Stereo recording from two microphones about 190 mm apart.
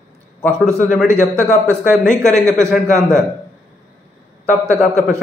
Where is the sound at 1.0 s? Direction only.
15° right (ahead or behind).